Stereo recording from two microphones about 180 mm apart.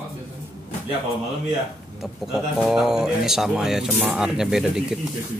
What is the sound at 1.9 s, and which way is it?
Speech, centre (ahead or behind).